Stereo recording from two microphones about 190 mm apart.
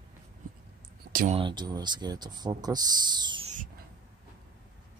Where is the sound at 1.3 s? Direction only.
25° right (ahead or behind).